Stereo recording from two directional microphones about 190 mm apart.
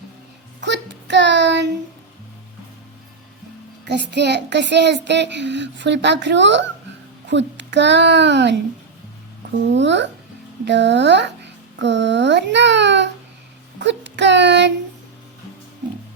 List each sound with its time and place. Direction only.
0.6 s child singing: 70° right (ahead or behind)
3.8 s a child's voice: 65° right (ahead or behind)
9.6 s a child's voice: 70° right (ahead or behind)
13.7 s child singing: 65° right (ahead or behind)